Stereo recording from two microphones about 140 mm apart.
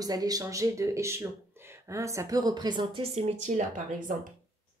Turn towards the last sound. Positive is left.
turn(degrees=-65)  # may be behind; listen again after turning